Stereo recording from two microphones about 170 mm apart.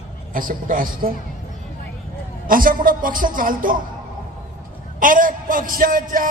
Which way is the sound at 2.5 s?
55° right (ahead or behind).